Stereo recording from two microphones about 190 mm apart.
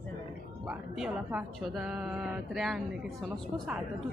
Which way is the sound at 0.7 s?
5° right (ahead or behind).